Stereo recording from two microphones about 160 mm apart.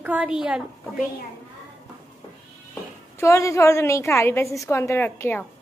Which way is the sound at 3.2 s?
20° left (ahead or behind).